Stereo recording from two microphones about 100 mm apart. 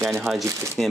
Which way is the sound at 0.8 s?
5° left (ahead or behind).